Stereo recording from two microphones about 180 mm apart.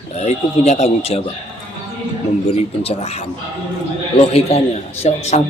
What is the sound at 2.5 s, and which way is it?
Speech, 35° left (ahead or behind).